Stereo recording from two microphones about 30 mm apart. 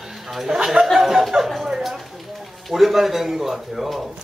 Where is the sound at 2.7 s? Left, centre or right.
Centre.